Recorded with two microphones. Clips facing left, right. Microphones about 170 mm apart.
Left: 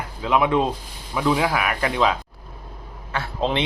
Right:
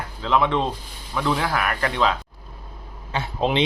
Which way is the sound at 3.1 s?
20° right (ahead or behind).